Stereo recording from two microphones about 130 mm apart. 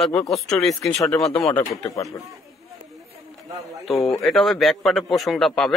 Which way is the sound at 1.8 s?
25° left (ahead or behind).